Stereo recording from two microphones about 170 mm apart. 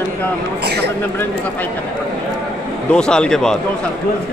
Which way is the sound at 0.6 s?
75° right (ahead or behind).